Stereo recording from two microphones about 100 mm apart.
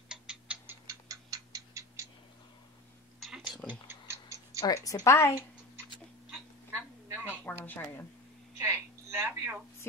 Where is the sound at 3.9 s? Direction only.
25° right (ahead or behind).